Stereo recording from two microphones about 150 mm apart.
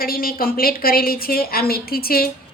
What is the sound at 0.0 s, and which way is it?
A woman's voice, 75° left (ahead or behind).